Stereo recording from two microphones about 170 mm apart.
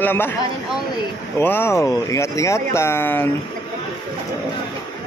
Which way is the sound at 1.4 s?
15° left (ahead or behind).